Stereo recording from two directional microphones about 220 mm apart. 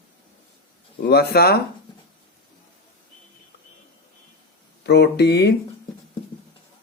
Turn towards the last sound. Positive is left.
turn(degrees=50)  # may be behind; listen again after turning